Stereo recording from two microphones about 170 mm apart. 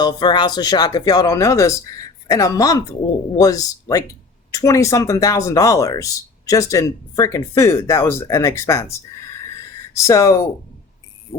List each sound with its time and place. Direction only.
0.0 s speech: 25° left (ahead or behind)